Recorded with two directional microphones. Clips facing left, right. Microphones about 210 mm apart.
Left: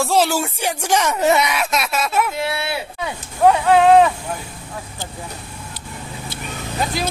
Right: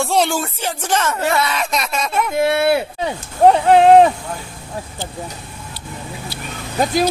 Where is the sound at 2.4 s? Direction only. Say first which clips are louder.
Right 9 dB; 50° right (ahead or behind).